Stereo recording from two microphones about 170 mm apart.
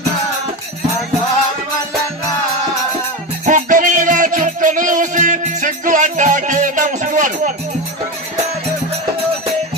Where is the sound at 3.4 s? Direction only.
50° right (ahead or behind).